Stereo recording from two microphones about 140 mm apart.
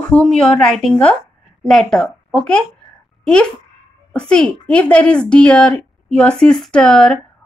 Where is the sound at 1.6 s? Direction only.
Centre (ahead or behind).